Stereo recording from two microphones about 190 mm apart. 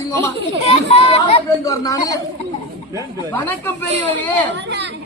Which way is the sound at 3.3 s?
10° left (ahead or behind).